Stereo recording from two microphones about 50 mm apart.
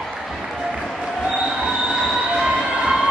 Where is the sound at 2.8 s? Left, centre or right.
Centre.